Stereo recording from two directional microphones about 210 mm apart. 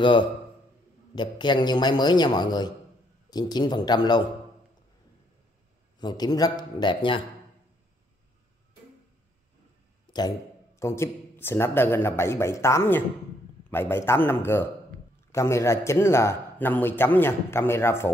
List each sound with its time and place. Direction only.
1.1 s a man's voice: 20° left (ahead or behind)
5.9 s a man's voice: 20° left (ahead or behind)
10.1 s a sound: 25° left (ahead or behind)
10.8 s a man's voice: 10° left (ahead or behind)